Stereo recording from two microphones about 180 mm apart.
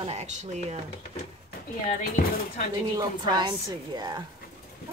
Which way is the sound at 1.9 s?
45° left (ahead or behind).